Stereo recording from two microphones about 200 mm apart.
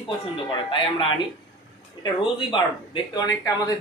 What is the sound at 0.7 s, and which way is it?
Speech, 25° left (ahead or behind).